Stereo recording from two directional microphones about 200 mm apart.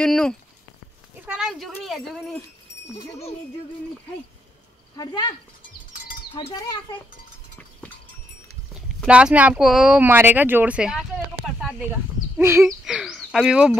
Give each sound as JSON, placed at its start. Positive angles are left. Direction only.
{"t": 0.0, "sound": "speech", "side_deg": 5}
{"t": 4.9, "sound": "speech", "side_deg": 20}
{"t": 6.3, "sound": "speech", "side_deg": 25}
{"t": 9.0, "sound": "speech", "side_deg": -5}
{"t": 12.8, "sound": "speech", "side_deg": 0}